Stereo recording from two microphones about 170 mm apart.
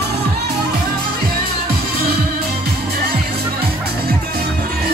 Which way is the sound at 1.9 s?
65° right (ahead or behind).